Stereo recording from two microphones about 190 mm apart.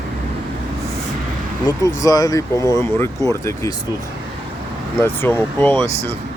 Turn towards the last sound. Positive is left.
turn(degrees=35)  # may be behind; listen again after turning